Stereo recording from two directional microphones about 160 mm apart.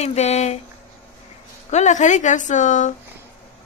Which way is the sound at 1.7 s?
50° left (ahead or behind).